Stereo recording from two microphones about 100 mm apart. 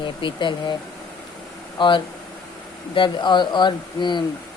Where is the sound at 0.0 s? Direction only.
55° left (ahead or behind).